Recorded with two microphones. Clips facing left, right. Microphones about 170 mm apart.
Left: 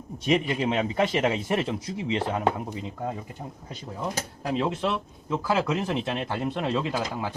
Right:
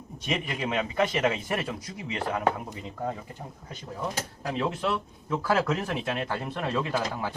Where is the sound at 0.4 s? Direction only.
25° left (ahead or behind).